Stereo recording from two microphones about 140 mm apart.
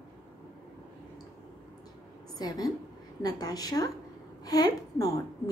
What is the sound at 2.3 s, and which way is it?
A woman's voice, 25° left (ahead or behind).